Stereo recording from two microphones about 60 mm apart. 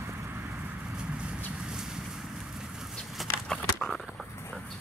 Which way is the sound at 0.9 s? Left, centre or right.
Centre.